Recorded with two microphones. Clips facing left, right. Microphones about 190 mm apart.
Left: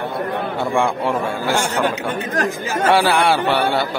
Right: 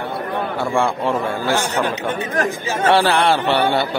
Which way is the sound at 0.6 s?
15° left (ahead or behind).